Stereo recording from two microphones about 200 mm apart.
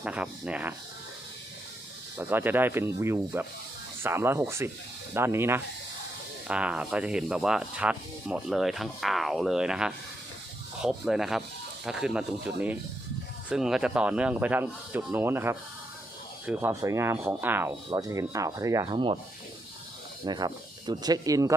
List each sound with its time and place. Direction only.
0.0 s speech: 5° right (ahead or behind)
2.1 s speech: 10° right (ahead or behind)
20.2 s speech: 20° right (ahead or behind)